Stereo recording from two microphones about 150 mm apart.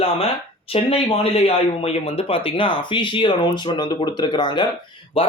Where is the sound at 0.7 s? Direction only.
40° left (ahead or behind).